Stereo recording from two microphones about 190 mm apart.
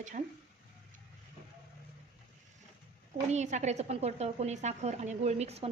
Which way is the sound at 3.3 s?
35° right (ahead or behind).